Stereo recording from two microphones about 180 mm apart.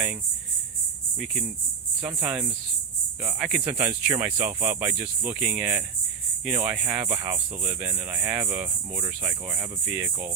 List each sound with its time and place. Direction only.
1.2 s speech: centre (ahead or behind)
7.2 s speech: 15° right (ahead or behind)